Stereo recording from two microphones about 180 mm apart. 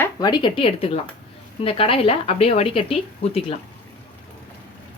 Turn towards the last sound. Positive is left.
turn(degrees=35)  # may be behind; listen again after turning